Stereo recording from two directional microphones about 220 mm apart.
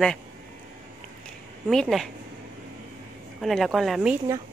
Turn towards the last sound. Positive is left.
turn(degrees=0)  # may be behind; listen again after turning